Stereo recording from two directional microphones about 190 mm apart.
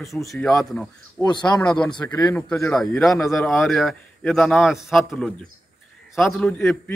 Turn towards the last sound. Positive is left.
turn(degrees=5)  # may be behind; listen again after turning